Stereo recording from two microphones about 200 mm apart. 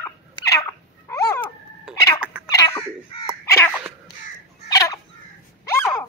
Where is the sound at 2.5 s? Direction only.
20° left (ahead or behind).